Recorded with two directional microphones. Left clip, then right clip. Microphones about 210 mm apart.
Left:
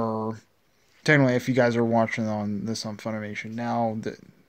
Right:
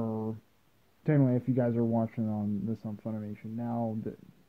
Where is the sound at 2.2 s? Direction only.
20° left (ahead or behind).